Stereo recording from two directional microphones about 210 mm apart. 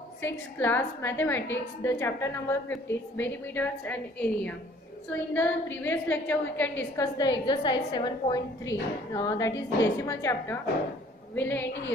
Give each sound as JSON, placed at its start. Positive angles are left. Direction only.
{"t": 0.2, "sound": "a woman's voice", "side_deg": 10}
{"t": 7.2, "sound": "a woman's voice", "side_deg": 20}